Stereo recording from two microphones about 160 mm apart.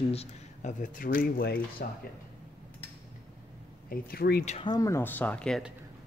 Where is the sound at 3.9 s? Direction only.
70° left (ahead or behind).